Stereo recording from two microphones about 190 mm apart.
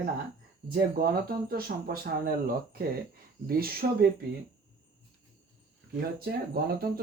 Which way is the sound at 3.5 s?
50° right (ahead or behind).